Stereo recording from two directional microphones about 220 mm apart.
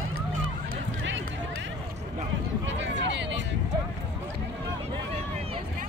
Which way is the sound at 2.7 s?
55° right (ahead or behind).